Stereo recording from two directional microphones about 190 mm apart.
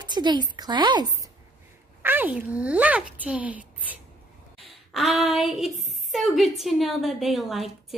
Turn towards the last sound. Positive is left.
turn(degrees=0)  # may be behind; listen again after turning